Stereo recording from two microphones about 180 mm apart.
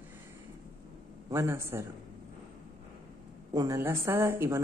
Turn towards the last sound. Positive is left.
turn(degrees=-15)  # may be behind; listen again after turning